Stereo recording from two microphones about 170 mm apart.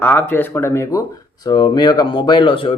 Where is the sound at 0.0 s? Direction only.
10° left (ahead or behind).